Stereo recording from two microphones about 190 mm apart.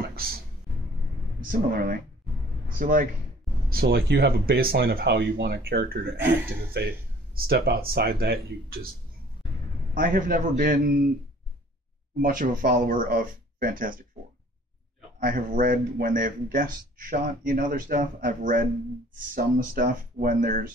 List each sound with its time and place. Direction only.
0.1 s music: 50° right (ahead or behind)
1.4 s speech: 45° right (ahead or behind)
3.7 s speech: 55° right (ahead or behind)
9.9 s speech: 45° right (ahead or behind)
12.2 s speech: 45° right (ahead or behind)
15.1 s speech: 45° right (ahead or behind)